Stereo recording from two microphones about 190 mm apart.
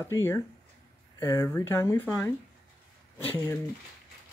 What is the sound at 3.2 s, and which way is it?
Speech, 10° left (ahead or behind).